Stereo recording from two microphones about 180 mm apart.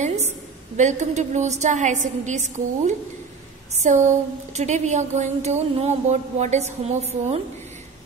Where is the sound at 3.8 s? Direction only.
40° right (ahead or behind).